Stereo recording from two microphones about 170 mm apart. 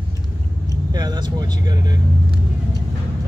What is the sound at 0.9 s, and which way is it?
Speech, 25° right (ahead or behind).